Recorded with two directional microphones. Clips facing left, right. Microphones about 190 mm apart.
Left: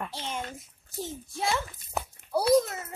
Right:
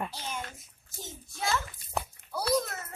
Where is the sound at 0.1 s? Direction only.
25° left (ahead or behind).